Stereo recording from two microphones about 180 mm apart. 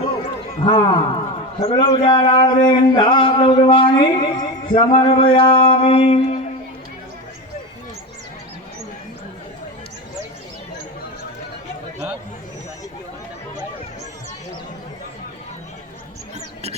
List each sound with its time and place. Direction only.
0.6 s a man's voice: 25° left (ahead or behind)